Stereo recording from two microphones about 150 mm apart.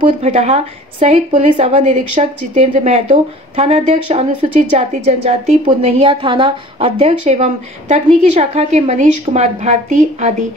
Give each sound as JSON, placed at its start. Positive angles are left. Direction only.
{"t": 0.2, "sound": "a woman's voice", "side_deg": -45}